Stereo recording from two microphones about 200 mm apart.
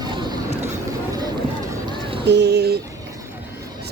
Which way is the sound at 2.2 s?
55° right (ahead or behind).